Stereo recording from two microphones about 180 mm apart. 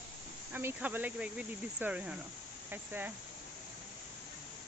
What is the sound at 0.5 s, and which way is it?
Speech, 10° right (ahead or behind).